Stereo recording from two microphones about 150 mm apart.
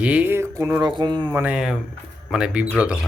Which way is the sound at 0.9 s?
30° right (ahead or behind).